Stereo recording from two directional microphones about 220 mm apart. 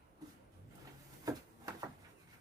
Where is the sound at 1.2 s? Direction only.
15° right (ahead or behind).